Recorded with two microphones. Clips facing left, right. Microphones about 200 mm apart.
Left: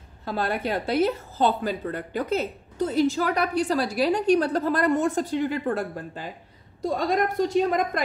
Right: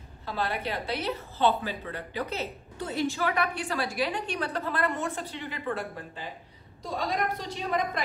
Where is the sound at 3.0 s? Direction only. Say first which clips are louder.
Left 3 dB; 40° left (ahead or behind).